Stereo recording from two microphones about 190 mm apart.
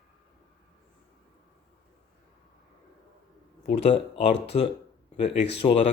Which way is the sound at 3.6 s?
30° left (ahead or behind).